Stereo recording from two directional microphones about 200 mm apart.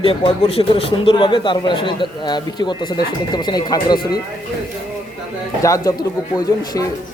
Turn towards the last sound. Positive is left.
turn(degrees=20)  # may be behind; listen again after turning